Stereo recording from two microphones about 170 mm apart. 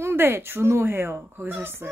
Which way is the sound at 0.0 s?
15° right (ahead or behind).